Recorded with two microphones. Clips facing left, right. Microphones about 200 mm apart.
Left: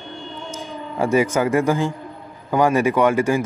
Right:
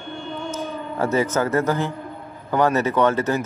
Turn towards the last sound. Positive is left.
turn(degrees=10)  # may be behind; listen again after turning